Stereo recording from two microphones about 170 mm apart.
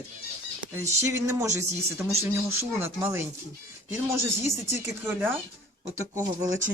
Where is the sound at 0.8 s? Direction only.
15° right (ahead or behind).